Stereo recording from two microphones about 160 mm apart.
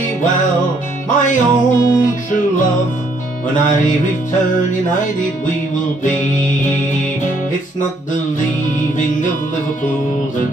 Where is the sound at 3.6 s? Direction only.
55° left (ahead or behind).